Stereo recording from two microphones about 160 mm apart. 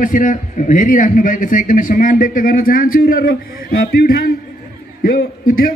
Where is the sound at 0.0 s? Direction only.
55° left (ahead or behind).